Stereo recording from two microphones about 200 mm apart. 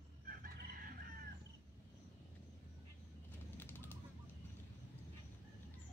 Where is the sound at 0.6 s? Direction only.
45° right (ahead or behind).